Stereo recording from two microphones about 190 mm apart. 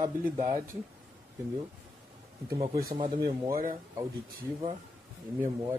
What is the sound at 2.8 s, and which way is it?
Speech, 25° right (ahead or behind).